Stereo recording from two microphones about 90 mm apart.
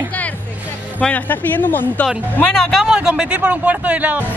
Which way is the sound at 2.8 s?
10° right (ahead or behind).